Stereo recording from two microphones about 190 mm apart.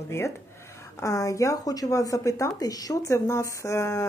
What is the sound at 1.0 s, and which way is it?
A woman's voice, 15° left (ahead or behind).